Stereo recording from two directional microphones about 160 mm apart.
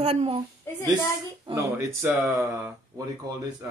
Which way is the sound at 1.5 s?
20° right (ahead or behind).